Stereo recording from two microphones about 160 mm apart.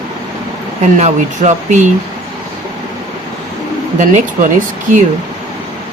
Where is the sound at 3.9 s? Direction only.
55° right (ahead or behind).